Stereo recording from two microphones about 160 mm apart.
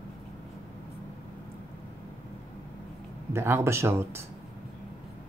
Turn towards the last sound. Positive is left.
turn(degrees=-15)  # may be behind; listen again after turning